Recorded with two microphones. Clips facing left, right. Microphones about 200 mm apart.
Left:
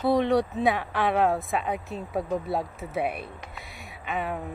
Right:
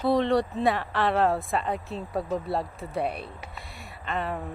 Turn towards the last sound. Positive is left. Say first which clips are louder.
# even
turn(degrees=5)  # may be behind; listen again after turning